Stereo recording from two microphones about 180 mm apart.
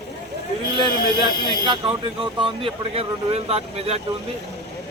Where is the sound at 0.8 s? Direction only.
25° right (ahead or behind).